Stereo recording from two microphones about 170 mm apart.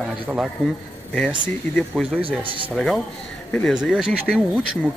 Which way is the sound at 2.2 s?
30° right (ahead or behind).